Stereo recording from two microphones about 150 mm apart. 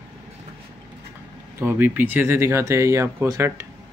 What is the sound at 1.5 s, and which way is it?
Speech, 15° right (ahead or behind).